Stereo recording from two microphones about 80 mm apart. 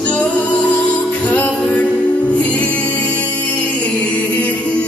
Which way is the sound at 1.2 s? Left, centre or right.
Centre.